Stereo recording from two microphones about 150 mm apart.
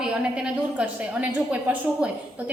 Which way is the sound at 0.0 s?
5° right (ahead or behind).